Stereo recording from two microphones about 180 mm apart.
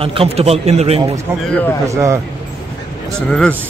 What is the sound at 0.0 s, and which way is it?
A man's voice, 30° right (ahead or behind).